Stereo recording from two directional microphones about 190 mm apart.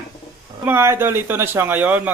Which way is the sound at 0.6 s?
10° right (ahead or behind).